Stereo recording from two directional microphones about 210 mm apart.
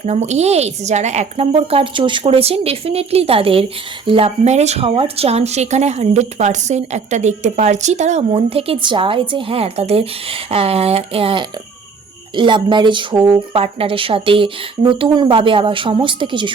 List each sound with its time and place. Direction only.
0.0 s speech: 35° right (ahead or behind)